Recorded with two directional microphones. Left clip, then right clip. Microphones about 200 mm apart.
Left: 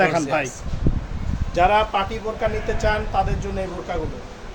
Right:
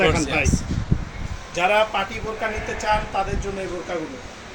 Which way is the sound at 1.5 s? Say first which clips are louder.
Left 2 dB; 45° left (ahead or behind).